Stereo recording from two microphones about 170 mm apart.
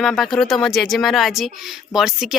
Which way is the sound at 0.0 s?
Centre (ahead or behind).